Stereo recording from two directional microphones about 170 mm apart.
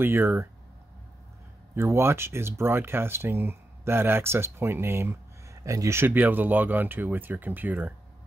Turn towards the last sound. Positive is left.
turn(degrees=-10)  # may be behind; listen again after turning